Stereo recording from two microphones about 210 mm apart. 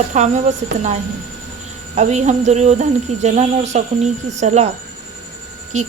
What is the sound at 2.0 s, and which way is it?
Speech, 35° right (ahead or behind).